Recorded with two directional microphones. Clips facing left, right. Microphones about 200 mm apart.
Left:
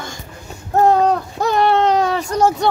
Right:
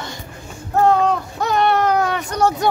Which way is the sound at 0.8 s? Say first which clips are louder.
Left 2 dB; 35° left (ahead or behind).